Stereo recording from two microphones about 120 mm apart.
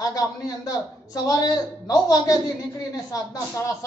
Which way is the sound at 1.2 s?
30° left (ahead or behind).